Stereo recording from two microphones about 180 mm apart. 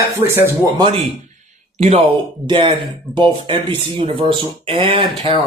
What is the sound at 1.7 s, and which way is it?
Speech, 40° right (ahead or behind).